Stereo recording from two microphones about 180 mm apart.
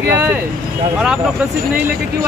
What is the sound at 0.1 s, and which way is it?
Speech, 10° right (ahead or behind).